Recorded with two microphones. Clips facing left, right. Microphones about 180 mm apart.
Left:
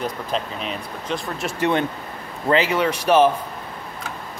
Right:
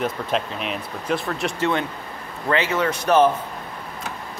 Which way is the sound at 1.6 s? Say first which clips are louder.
Left 6 dB; 20° left (ahead or behind).